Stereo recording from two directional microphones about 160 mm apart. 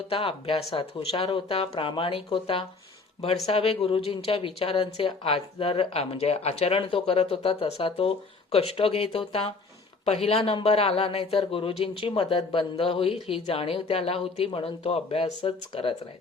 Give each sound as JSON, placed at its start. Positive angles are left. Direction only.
{"t": 0.1, "sound": "speech", "side_deg": 35}